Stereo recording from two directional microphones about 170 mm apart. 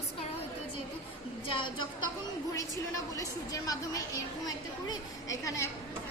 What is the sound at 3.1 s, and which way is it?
A woman's voice, 20° left (ahead or behind).